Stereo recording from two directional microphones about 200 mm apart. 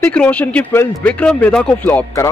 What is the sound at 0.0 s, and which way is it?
A man's voice, 5° left (ahead or behind).